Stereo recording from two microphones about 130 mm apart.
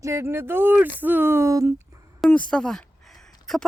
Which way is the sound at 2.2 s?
10° left (ahead or behind).